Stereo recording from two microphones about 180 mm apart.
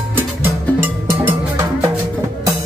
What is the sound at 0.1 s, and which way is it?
Music, 10° right (ahead or behind).